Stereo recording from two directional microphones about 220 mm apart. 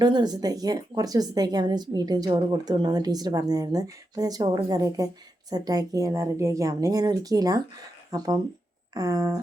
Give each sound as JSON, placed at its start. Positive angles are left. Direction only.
{"t": 0.0, "sound": "speech", "side_deg": -20}